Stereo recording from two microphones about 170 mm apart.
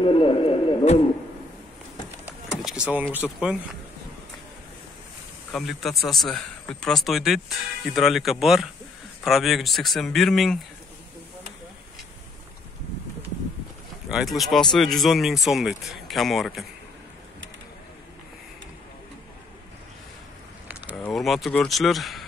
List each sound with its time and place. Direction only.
0.0 s a sound: 30° left (ahead or behind)
2.6 s speech: 5° right (ahead or behind)
5.5 s speech: centre (ahead or behind)
14.0 s speech: centre (ahead or behind)
21.0 s speech: centre (ahead or behind)